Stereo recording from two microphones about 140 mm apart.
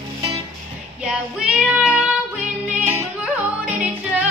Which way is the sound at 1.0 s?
5° right (ahead or behind).